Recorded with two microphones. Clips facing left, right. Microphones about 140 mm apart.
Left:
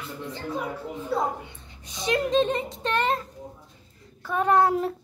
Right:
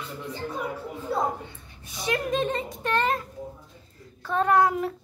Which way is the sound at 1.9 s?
20° left (ahead or behind).